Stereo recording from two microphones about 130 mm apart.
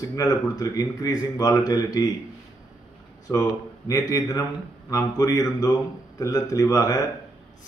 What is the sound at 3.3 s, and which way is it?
Speech, 25° left (ahead or behind).